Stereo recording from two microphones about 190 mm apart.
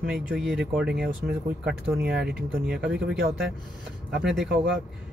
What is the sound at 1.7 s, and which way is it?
Speech, 50° right (ahead or behind).